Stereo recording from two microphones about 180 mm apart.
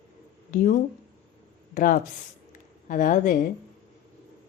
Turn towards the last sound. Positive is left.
turn(degrees=45)  # may be behind; listen again after turning